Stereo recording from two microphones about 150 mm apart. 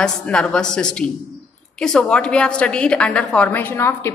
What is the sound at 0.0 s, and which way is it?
A woman's voice, 5° left (ahead or behind).